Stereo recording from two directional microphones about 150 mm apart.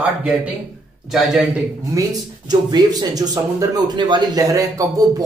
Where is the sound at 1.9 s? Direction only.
25° right (ahead or behind).